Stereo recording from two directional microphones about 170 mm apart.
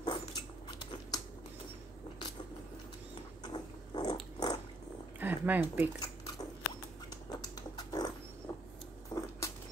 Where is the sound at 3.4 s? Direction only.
25° left (ahead or behind).